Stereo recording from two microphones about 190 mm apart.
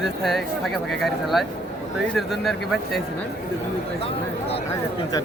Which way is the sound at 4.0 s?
30° left (ahead or behind).